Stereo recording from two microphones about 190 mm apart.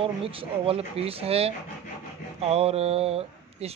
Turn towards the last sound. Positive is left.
turn(degrees=-35)  # may be behind; listen again after turning